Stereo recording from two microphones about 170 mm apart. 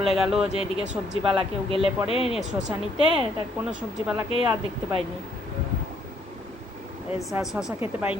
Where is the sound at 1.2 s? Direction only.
30° right (ahead or behind).